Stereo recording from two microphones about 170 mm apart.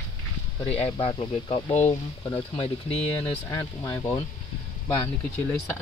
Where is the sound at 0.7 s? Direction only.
35° left (ahead or behind).